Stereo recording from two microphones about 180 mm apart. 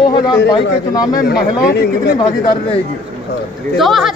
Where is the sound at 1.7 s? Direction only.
65° left (ahead or behind).